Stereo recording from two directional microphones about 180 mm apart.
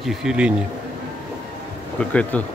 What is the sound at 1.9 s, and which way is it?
Speech, 5° left (ahead or behind).